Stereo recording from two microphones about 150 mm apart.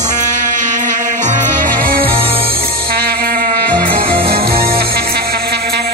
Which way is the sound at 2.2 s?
40° right (ahead or behind).